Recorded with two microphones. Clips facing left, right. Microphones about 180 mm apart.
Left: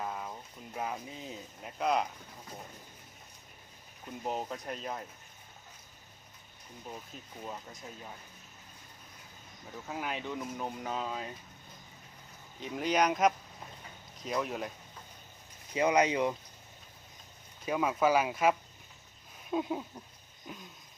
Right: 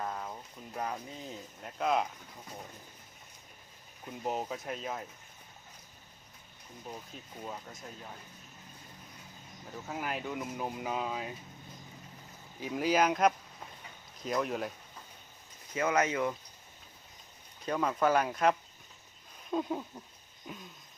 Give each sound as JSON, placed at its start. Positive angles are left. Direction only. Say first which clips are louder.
{"t": 0.0, "sound": "a sound", "louder": "even", "side_deg": 5}
{"t": 1.6, "sound": "speech", "louder": "even", "side_deg": 0}
{"t": 4.2, "sound": "speech", "louder": "right 1 dB", "side_deg": -5}
{"t": 7.4, "sound": "speech", "louder": "even", "side_deg": 0}
{"t": 9.9, "sound": "speech", "louder": "even", "side_deg": 0}
{"t": 12.5, "sound": "speech", "louder": "right 1 dB", "side_deg": -5}
{"t": 15.7, "sound": "speech", "louder": "left 3 dB", "side_deg": 15}
{"t": 17.7, "sound": "speech", "louder": "left 1 dB", "side_deg": 5}
{"t": 20.5, "sound": "a sound", "louder": "right 1 dB", "side_deg": 0}